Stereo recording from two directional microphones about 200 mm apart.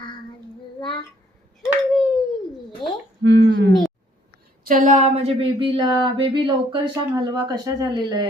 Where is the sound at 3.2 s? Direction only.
60° right (ahead or behind).